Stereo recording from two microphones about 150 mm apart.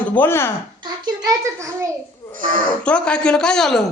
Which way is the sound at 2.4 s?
70° right (ahead or behind).